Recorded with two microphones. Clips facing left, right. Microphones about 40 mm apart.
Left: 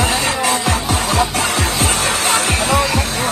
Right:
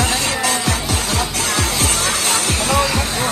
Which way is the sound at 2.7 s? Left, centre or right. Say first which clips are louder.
Left 1 dB; centre.